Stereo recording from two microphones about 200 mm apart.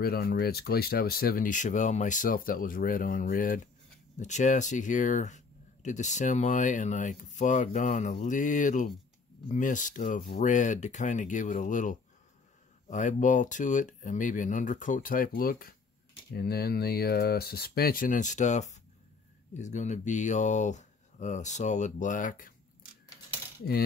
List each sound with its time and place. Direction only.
0.0 s speech: 50° left (ahead or behind)